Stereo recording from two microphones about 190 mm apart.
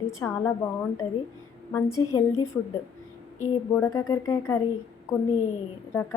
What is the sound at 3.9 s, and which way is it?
Speech, 20° left (ahead or behind).